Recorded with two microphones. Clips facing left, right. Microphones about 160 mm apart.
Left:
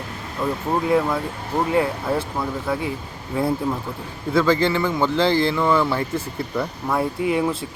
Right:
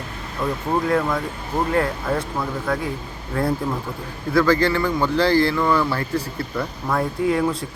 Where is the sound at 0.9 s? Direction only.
10° left (ahead or behind).